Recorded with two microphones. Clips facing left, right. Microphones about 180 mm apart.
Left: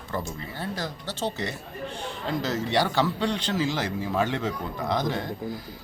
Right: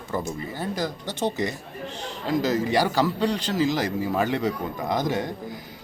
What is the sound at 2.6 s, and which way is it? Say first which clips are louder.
Speech: right 2 dB; 10° right (ahead or behind).